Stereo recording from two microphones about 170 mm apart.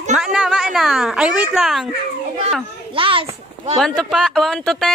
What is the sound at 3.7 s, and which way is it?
Speech, centre (ahead or behind).